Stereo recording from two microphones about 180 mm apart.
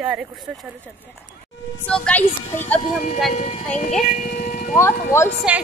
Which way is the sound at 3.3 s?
40° left (ahead or behind).